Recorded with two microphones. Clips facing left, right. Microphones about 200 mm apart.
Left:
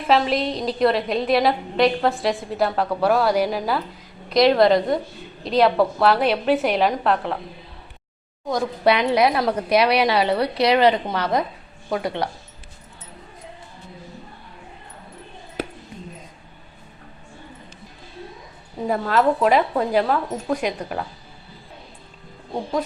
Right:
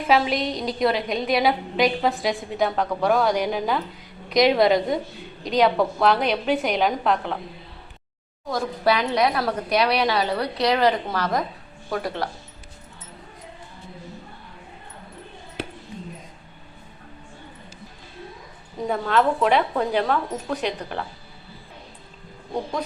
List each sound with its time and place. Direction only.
0.0 s a woman's voice: centre (ahead or behind)
8.4 s a woman's voice: 20° left (ahead or behind)
9.8 s a woman's voice: centre (ahead or behind)
10.1 s a woman's voice: 25° left (ahead or behind)
18.9 s a woman's voice: 5° left (ahead or behind)